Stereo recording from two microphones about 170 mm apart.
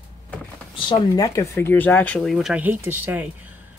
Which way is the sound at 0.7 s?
25° left (ahead or behind).